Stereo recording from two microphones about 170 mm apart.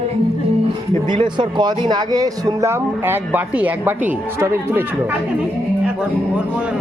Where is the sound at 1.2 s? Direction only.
25° right (ahead or behind).